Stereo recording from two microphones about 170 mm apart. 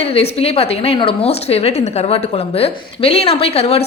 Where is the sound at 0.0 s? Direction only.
35° left (ahead or behind).